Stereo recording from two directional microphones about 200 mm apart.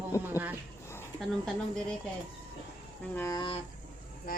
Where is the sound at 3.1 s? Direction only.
15° left (ahead or behind).